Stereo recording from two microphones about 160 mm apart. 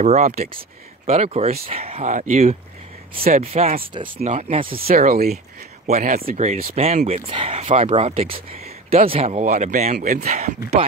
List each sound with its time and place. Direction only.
0.0 s speech: 45° right (ahead or behind)
2.1 s speech: 55° right (ahead or behind)
3.2 s speech: 40° right (ahead or behind)
4.8 s speech: 65° right (ahead or behind)
5.9 s speech: 45° right (ahead or behind)